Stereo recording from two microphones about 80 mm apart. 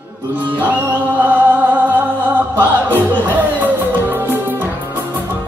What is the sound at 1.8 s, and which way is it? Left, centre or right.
Music, right.